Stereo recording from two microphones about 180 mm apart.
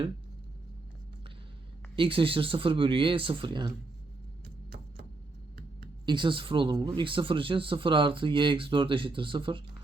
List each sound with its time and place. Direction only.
2.0 s speech: 30° right (ahead or behind)
6.1 s speech: 25° right (ahead or behind)